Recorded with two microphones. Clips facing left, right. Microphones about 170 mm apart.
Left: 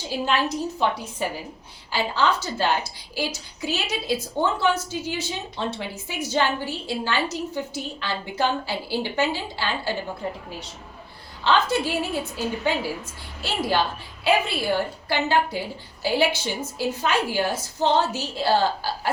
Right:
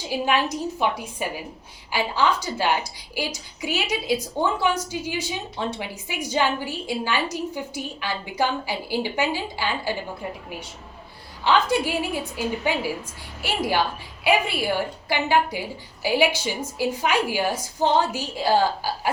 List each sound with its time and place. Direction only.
0.1 s a woman's voice: 15° right (ahead or behind)
11.4 s a woman's voice: 10° right (ahead or behind)